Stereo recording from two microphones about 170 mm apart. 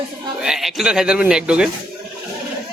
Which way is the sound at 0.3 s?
5° right (ahead or behind).